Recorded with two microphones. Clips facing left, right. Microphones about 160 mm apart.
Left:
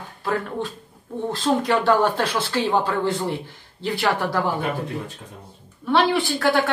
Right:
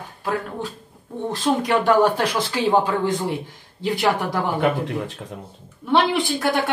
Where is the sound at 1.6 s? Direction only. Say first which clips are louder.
Right 3 dB; 15° right (ahead or behind).